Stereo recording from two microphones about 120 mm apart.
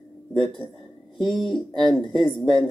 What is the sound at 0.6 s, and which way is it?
Speech, 15° left (ahead or behind).